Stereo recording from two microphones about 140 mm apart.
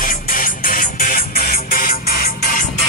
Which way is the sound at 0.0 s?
85° left.